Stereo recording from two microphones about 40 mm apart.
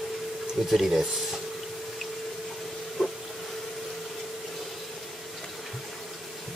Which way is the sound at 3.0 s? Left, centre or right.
Centre.